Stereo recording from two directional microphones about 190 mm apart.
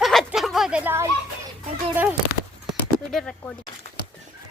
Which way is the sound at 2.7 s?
Centre (ahead or behind).